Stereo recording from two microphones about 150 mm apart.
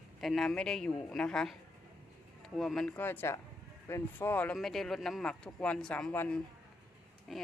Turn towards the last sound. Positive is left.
turn(degrees=0)  # may be behind; listen again after turning